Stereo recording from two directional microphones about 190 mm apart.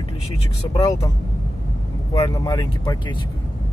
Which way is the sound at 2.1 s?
20° left (ahead or behind).